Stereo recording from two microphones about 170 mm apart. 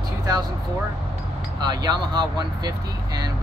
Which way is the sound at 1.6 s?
25° right (ahead or behind).